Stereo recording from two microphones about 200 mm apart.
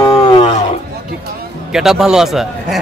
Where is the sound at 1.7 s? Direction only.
Centre (ahead or behind).